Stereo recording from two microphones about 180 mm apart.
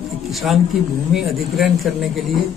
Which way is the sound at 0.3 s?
Centre (ahead or behind).